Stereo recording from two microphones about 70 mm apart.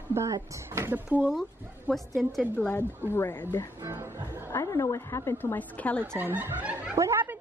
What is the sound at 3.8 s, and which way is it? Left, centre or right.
Speech, right.